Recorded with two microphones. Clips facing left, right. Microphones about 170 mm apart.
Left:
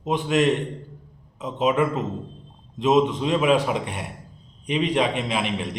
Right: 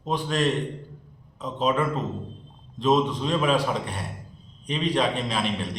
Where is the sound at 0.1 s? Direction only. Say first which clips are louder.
Left 4 dB; 15° left (ahead or behind).